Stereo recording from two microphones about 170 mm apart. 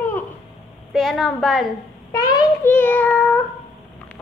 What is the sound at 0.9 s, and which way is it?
Speech, centre (ahead or behind).